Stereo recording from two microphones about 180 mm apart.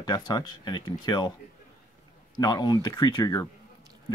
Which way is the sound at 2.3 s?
20° left (ahead or behind).